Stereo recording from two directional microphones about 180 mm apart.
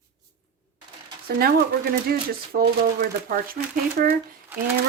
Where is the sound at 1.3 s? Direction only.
55° right (ahead or behind).